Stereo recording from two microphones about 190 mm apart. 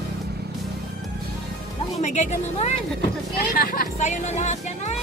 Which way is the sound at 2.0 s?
40° left (ahead or behind).